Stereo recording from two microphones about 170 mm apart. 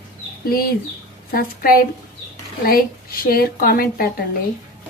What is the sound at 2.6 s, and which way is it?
A woman's voice, 60° left (ahead or behind).